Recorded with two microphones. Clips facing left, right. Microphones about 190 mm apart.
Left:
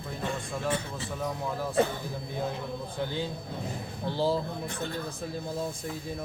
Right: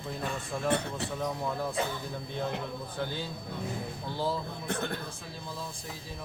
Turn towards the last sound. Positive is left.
turn(degrees=30)  # may be behind; listen again after turning